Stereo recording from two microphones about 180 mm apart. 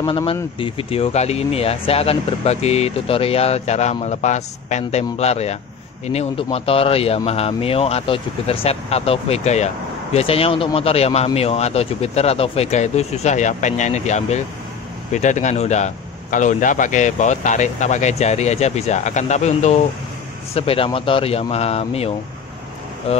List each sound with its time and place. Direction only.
0.0 s speech: 25° left (ahead or behind)